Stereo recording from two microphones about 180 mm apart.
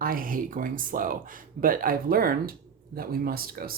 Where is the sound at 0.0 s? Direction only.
50° right (ahead or behind).